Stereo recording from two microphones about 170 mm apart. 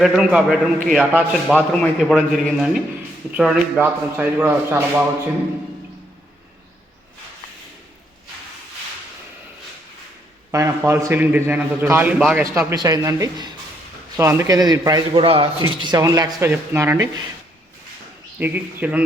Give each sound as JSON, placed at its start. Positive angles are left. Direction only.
{"t": 0.0, "sound": "a man's voice", "side_deg": -5}
{"t": 10.5, "sound": "speech", "side_deg": -15}
{"t": 12.7, "sound": "a man's voice", "side_deg": -20}
{"t": 18.3, "sound": "speech", "side_deg": -10}